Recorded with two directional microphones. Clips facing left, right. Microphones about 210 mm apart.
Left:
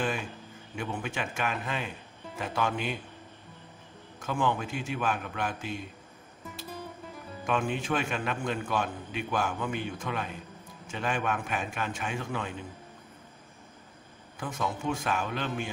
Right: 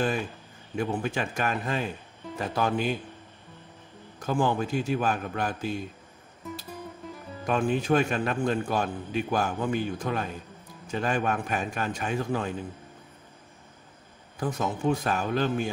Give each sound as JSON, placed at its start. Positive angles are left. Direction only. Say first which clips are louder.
{"t": 0.7, "sound": "a man's voice", "louder": "right 6 dB", "side_deg": -35}
{"t": 4.2, "sound": "a man's voice", "louder": "right 4 dB", "side_deg": -35}
{"t": 7.4, "sound": "a man's voice", "louder": "right 5 dB", "side_deg": -40}
{"t": 14.4, "sound": "a man's voice", "louder": "right 5 dB", "side_deg": -40}